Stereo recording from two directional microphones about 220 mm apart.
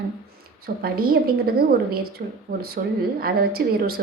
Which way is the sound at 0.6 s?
45° right (ahead or behind).